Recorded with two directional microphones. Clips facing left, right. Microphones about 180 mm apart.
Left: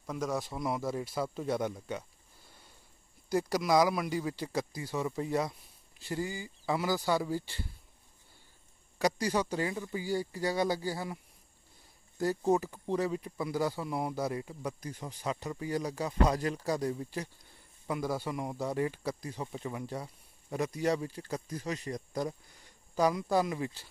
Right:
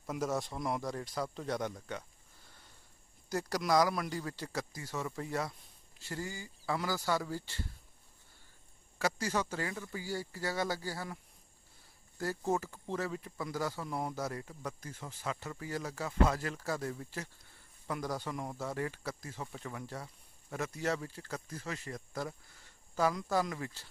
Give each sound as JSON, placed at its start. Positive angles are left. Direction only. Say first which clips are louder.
{"t": 0.0, "sound": "a man's voice", "louder": "left 1 dB", "side_deg": -5}
{"t": 8.9, "sound": "speech", "louder": "left 4 dB", "side_deg": 15}
{"t": 12.2, "sound": "speech", "louder": "left 6 dB", "side_deg": 15}